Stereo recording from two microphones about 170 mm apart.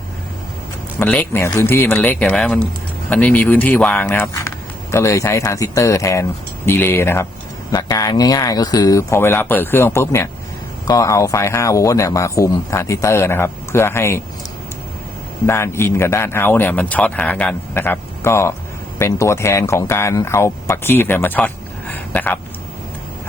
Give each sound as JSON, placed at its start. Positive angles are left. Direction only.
{"t": 0.9, "sound": "speech", "side_deg": 10}
{"t": 15.4, "sound": "speech", "side_deg": 15}